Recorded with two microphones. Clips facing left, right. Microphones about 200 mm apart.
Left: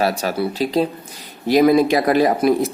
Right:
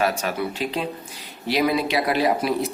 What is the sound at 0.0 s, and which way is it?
Speech, 35° left (ahead or behind).